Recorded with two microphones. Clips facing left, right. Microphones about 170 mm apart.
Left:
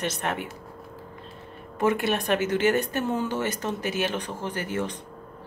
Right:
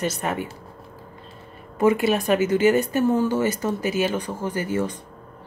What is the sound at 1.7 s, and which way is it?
Speech, 5° right (ahead or behind).